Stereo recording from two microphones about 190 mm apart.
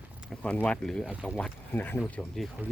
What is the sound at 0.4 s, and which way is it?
Speech, 5° left (ahead or behind).